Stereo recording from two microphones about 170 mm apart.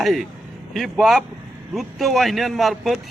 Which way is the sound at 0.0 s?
Centre (ahead or behind).